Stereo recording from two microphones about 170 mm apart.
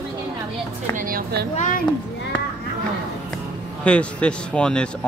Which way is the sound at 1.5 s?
45° left (ahead or behind).